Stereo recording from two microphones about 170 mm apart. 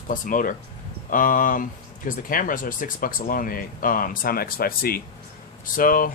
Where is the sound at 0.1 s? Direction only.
50° left (ahead or behind).